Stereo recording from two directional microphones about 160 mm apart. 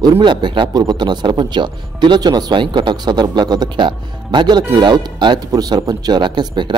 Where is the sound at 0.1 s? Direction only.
30° right (ahead or behind).